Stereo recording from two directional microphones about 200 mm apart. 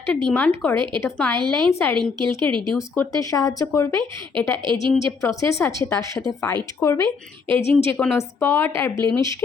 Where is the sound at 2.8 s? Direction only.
15° left (ahead or behind).